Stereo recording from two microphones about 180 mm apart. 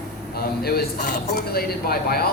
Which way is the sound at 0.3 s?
60° left (ahead or behind).